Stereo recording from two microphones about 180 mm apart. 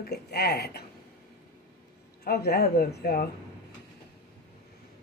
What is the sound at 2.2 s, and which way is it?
Speech, 60° left (ahead or behind).